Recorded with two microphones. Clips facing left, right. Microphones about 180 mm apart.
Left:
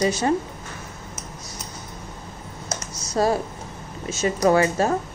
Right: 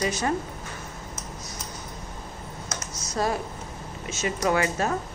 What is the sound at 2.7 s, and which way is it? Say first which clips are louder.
Computer keyboard: left 6 dB; 35° left (ahead or behind).